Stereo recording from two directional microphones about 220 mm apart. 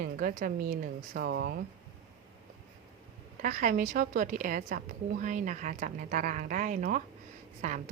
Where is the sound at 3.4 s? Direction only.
35° right (ahead or behind).